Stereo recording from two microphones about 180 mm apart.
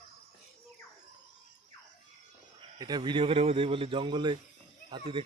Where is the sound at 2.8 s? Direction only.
25° right (ahead or behind).